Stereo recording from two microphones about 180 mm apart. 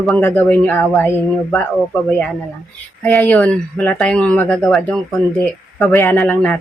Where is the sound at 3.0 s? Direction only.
10° left (ahead or behind).